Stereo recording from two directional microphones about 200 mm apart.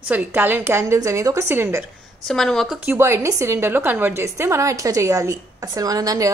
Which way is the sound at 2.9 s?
15° right (ahead or behind).